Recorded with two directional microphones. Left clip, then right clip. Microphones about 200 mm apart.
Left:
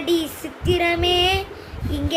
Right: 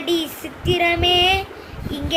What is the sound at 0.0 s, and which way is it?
Child singing, 20° left (ahead or behind).